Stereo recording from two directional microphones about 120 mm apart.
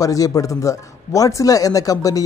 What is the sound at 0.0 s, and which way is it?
A man's voice, 30° left (ahead or behind).